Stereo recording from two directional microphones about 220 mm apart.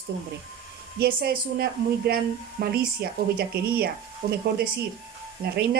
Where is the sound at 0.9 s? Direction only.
45° right (ahead or behind).